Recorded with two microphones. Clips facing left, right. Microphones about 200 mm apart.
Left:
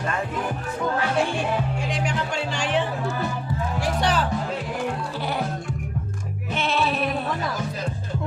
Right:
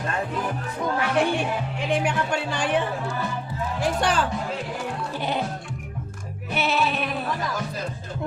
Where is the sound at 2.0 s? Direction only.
55° right (ahead or behind).